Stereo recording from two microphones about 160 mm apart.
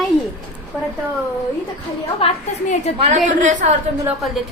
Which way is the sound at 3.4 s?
50° right (ahead or behind).